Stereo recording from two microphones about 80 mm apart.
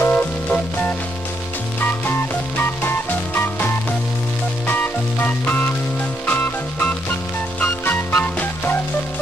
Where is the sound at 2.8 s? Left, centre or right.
Left.